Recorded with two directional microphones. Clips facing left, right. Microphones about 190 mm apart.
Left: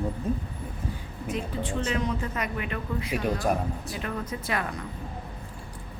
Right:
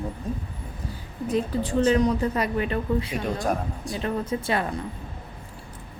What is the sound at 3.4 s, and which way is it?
Speech, centre (ahead or behind).